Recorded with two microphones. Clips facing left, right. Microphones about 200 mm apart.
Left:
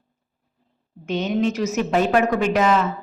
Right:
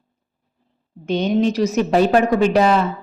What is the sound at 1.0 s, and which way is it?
A woman's voice, 35° right (ahead or behind).